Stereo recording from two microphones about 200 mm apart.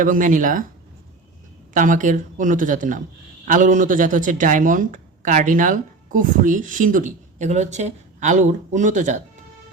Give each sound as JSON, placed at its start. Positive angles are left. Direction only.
{"t": 0.0, "sound": "speech", "side_deg": -40}
{"t": 1.7, "sound": "speech", "side_deg": -40}